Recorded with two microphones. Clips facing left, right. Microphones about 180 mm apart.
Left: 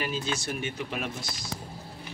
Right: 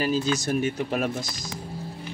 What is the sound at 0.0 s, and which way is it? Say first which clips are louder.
Speech: right 7 dB; 40° right (ahead or behind).